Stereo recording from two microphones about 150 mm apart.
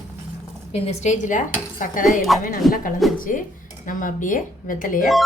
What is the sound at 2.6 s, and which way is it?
Speech, centre (ahead or behind).